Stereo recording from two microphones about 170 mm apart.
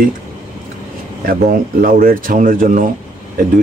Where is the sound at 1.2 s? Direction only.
55° right (ahead or behind).